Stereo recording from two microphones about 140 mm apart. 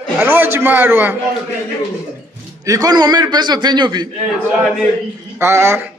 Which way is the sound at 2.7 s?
25° right (ahead or behind).